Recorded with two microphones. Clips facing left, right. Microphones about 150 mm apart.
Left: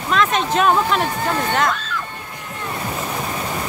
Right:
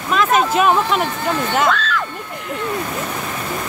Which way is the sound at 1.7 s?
90° right.